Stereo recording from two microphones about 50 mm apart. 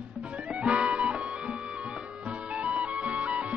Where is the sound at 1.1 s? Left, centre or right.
Right.